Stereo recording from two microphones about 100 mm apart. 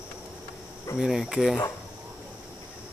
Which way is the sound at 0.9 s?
5° right (ahead or behind).